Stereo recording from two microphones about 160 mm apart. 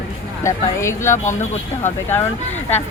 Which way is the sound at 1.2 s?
50° left (ahead or behind).